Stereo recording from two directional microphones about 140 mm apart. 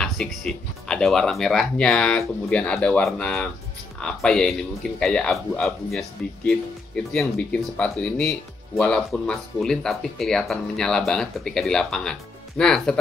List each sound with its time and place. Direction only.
0.0 s speech: centre (ahead or behind)